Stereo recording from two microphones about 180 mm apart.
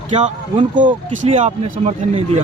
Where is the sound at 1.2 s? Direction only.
35° right (ahead or behind).